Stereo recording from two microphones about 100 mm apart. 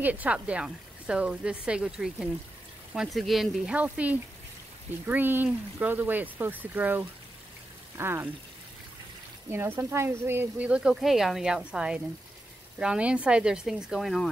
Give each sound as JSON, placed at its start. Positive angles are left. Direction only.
{"t": 0.0, "sound": "speech", "side_deg": -15}
{"t": 3.7, "sound": "speech", "side_deg": -15}
{"t": 9.5, "sound": "speech", "side_deg": -25}
{"t": 10.7, "sound": "speech", "side_deg": -5}